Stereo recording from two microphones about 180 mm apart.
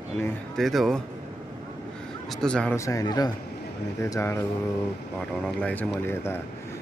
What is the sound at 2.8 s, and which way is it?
Speech, 20° left (ahead or behind).